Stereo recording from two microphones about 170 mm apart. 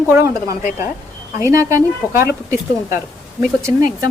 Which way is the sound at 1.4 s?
15° right (ahead or behind).